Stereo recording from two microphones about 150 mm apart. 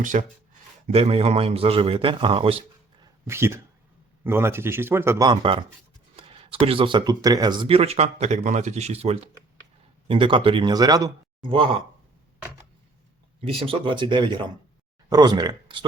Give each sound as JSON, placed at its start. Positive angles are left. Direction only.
{"t": 0.0, "sound": "speech", "side_deg": -60}
{"t": 0.9, "sound": "speech", "side_deg": -40}
{"t": 3.2, "sound": "speech", "side_deg": -15}
{"t": 5.4, "sound": "speech", "side_deg": -35}
{"t": 13.4, "sound": "speech", "side_deg": -35}